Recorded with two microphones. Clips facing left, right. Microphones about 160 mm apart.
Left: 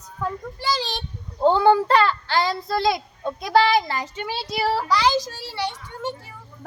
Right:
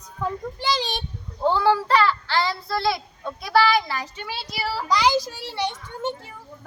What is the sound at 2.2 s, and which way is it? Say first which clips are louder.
Child singing: left 1 dB; 15° left (ahead or behind).